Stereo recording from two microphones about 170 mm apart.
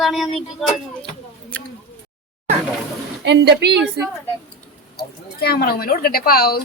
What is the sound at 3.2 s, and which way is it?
Speech, 80° right.